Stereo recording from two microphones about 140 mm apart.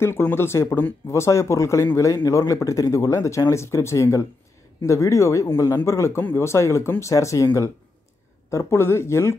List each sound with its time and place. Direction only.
0.0 s speech: 15° left (ahead or behind)